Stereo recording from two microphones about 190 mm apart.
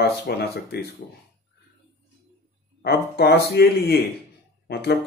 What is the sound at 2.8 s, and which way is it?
Speech, 55° left (ahead or behind).